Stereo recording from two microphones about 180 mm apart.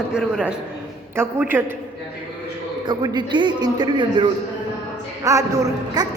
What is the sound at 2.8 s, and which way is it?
A man's voice, 25° right (ahead or behind).